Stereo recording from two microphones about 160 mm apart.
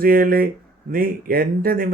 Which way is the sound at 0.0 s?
65° right (ahead or behind).